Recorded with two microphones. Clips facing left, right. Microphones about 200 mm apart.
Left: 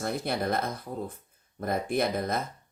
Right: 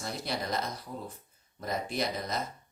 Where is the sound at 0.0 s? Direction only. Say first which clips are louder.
Left 6 dB; 55° left (ahead or behind).